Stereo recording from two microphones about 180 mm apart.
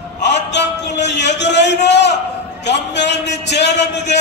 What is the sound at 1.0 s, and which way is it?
A man's voice, 75° left (ahead or behind).